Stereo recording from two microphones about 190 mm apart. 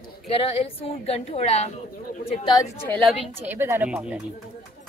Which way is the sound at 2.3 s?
25° left (ahead or behind).